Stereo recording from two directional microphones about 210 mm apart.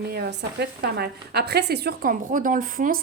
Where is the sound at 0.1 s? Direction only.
50° right (ahead or behind).